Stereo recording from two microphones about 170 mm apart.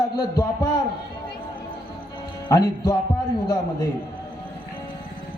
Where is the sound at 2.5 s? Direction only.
25° left (ahead or behind).